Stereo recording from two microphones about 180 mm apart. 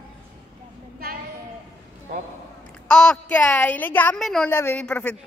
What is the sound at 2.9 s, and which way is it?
A woman's voice, 5° left (ahead or behind).